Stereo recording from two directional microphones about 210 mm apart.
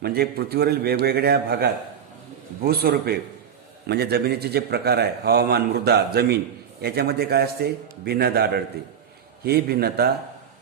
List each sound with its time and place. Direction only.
0.0 s a man's voice: 50° right (ahead or behind)